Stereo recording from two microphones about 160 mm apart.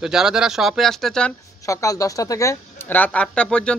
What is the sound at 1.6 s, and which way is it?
A woman's voice, 20° left (ahead or behind).